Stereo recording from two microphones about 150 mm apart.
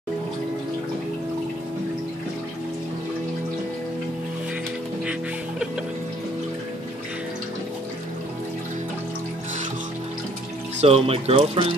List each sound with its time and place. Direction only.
10.8 s speech: 45° right (ahead or behind)